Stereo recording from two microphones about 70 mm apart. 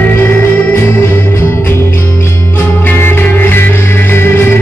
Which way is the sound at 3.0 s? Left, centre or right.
Left.